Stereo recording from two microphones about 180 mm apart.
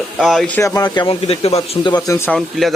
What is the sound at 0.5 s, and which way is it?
Speech, 20° left (ahead or behind).